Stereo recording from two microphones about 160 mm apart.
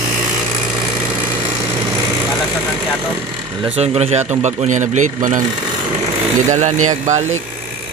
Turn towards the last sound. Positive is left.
turn(degrees=-50)  # may be behind; listen again after turning